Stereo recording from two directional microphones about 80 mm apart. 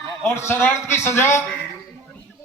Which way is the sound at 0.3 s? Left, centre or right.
Left.